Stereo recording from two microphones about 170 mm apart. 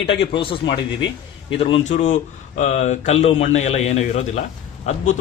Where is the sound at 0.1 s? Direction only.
30° left (ahead or behind).